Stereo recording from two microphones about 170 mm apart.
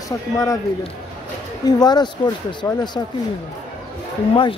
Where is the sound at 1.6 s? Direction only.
25° left (ahead or behind).